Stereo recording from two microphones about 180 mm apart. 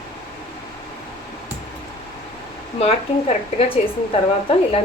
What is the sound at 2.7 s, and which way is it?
Speech, 35° left (ahead or behind).